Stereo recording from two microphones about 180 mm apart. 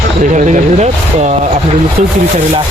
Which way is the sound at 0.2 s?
45° right (ahead or behind).